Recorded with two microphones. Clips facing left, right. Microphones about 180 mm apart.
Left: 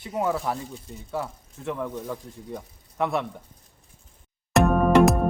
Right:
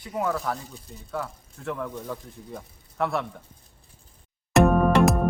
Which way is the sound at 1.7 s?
10° left (ahead or behind).